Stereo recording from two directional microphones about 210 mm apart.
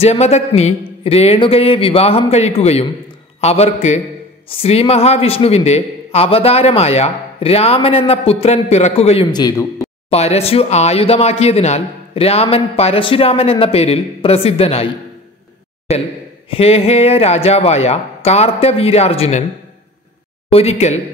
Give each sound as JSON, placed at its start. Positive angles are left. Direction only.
{"t": 0.0, "sound": "a man's voice", "side_deg": 30}
{"t": 10.0, "sound": "a man's voice", "side_deg": 30}
{"t": 15.9, "sound": "a man's voice", "side_deg": 30}
{"t": 20.5, "sound": "a man's voice", "side_deg": 30}